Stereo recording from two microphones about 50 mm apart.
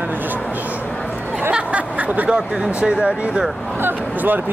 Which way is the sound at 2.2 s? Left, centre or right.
Centre.